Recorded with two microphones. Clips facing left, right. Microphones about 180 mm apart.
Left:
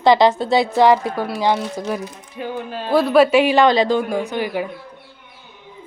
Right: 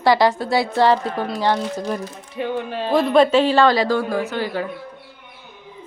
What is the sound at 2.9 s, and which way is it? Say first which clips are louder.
A woman's voice: left 2 dB; 5° left (ahead or behind).